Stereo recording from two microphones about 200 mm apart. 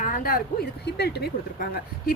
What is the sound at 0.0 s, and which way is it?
Speech, 45° left (ahead or behind).